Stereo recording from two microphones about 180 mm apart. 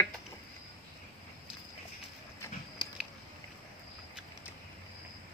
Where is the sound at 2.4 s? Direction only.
25° left (ahead or behind).